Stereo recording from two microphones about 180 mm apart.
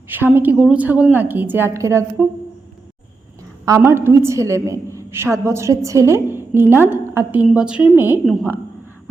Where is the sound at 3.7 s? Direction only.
15° right (ahead or behind).